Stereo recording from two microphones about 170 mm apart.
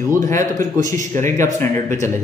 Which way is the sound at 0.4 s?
45° right (ahead or behind).